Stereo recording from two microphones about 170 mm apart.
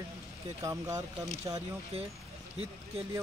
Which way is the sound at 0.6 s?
20° right (ahead or behind).